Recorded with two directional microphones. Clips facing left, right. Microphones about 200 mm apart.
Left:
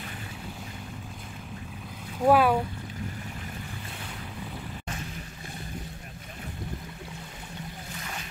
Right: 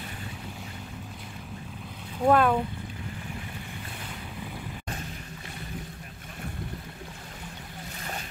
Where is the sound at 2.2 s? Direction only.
5° left (ahead or behind).